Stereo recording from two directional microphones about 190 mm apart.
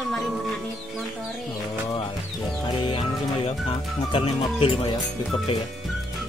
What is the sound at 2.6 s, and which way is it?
Speech, 25° left (ahead or behind).